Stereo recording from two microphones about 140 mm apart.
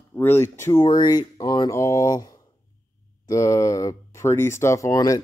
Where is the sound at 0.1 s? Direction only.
15° left (ahead or behind).